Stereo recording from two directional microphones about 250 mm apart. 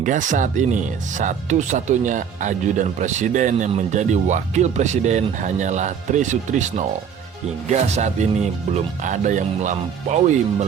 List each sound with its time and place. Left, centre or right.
0.0 s speech: right